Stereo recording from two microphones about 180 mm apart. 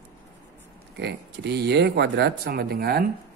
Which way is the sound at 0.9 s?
70° right (ahead or behind).